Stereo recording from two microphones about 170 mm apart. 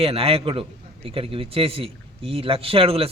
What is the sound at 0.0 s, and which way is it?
A man's voice, 35° right (ahead or behind).